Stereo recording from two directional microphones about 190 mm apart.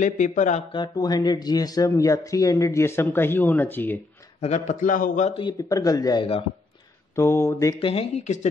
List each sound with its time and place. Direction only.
0.0 s a man's voice: 40° left (ahead or behind)
0.7 s speech: 20° left (ahead or behind)
4.4 s a man's voice: 40° left (ahead or behind)
7.2 s speech: 15° left (ahead or behind)
7.8 s a man's voice: 30° left (ahead or behind)